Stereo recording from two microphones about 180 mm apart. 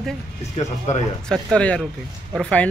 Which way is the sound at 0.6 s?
35° left (ahead or behind).